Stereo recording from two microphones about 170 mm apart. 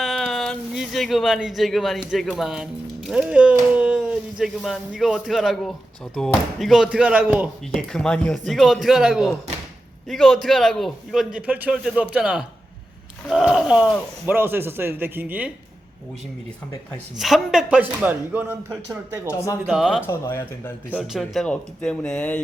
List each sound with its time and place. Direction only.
0.0 s a sound: centre (ahead or behind)
2.0 s speech: centre (ahead or behind)
17.2 s speech: centre (ahead or behind)
19.3 s speech: 20° left (ahead or behind)
19.6 s speech: 5° right (ahead or behind)
20.1 s speech: 15° left (ahead or behind)
20.9 s speech: 5° right (ahead or behind)